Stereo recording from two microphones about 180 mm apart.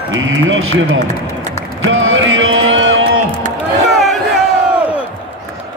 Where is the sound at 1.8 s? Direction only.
90° right.